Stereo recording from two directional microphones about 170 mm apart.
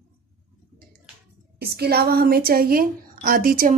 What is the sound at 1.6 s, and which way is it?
A woman's voice, 65° right (ahead or behind).